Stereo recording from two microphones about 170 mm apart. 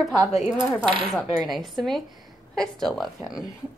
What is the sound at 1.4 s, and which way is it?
A woman's voice, centre (ahead or behind).